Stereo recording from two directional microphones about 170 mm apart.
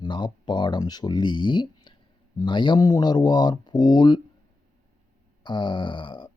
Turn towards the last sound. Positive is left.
turn(degrees=30)  # may be behind; listen again after turning